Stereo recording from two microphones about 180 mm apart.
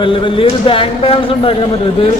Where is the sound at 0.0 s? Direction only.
30° left (ahead or behind).